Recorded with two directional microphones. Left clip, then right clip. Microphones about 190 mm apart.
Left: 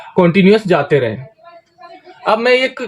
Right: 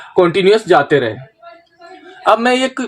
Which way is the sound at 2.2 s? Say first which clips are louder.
Even; 60° right (ahead or behind).